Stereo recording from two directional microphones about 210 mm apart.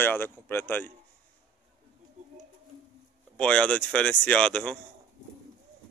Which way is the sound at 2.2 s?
35° right (ahead or behind).